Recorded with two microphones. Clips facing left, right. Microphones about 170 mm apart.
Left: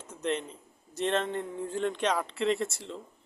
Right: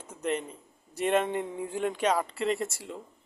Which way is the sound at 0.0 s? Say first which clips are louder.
Right 1 dB; 10° right (ahead or behind).